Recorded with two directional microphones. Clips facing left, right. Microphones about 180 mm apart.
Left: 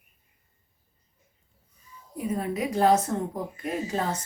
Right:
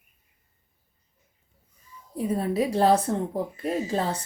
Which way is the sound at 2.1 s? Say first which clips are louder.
Right 4 dB; 30° right (ahead or behind).